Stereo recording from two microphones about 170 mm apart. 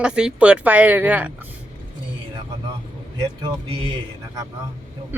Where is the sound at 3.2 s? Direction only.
25° right (ahead or behind).